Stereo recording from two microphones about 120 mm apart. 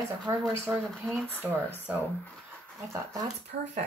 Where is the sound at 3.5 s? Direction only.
90° right.